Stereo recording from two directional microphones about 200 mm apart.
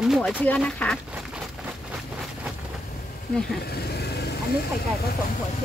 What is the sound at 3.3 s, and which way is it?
Speech, 5° left (ahead or behind).